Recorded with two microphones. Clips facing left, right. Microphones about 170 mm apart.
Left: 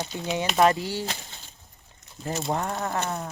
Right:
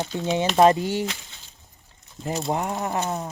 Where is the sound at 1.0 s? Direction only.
35° left (ahead or behind).